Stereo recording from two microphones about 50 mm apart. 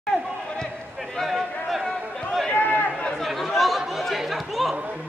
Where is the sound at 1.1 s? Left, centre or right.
Centre.